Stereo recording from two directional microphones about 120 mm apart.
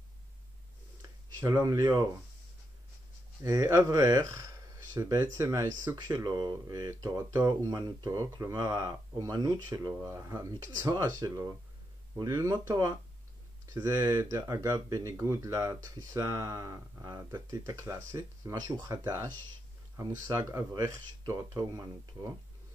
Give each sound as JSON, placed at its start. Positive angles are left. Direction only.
{"t": 1.0, "sound": "speech", "side_deg": -35}
{"t": 3.4, "sound": "speech", "side_deg": -30}
{"t": 10.9, "sound": "speech", "side_deg": -35}
{"t": 13.7, "sound": "speech", "side_deg": -35}
{"t": 20.2, "sound": "speech", "side_deg": -30}